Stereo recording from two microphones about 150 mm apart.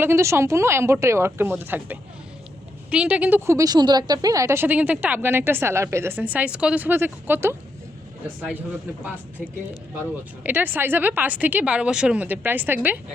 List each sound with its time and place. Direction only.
0.0 s a woman's voice: 15° right (ahead or behind)
10.4 s a woman's voice: 10° right (ahead or behind)